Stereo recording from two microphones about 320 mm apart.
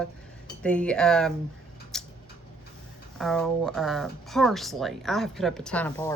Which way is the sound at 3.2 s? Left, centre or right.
Centre.